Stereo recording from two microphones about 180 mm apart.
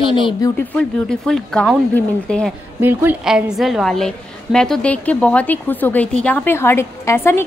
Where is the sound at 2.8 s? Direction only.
10° right (ahead or behind).